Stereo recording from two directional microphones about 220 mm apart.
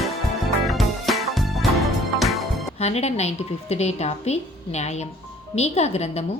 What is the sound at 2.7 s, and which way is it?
Speech, 30° left (ahead or behind).